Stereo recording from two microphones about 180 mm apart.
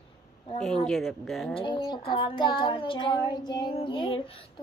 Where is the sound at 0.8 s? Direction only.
5° left (ahead or behind).